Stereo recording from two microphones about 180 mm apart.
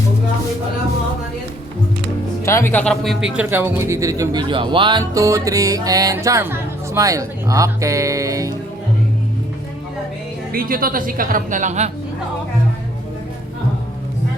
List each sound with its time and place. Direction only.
2.4 s speech: 15° left (ahead or behind); by 8.5 s 20° right (ahead or behind)
10.5 s a woman's voice: 55° right (ahead or behind)